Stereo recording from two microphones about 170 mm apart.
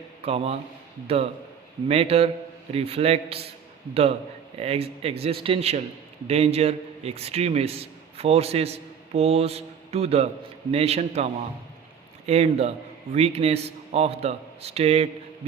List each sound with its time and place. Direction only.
0.2 s a man's voice: 35° right (ahead or behind)
4.6 s a man's voice: 35° right (ahead or behind)